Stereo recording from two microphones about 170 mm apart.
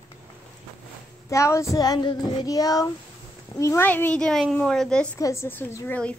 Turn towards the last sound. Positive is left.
turn(degrees=10)  # may be behind; listen again after turning